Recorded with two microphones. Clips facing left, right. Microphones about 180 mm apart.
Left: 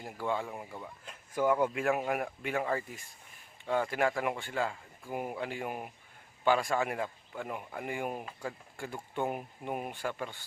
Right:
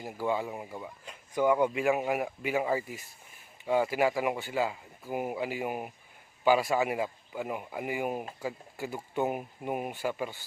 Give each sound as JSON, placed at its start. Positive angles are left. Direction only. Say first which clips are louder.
{"t": 0.0, "sound": "speech", "louder": "right 3 dB", "side_deg": -5}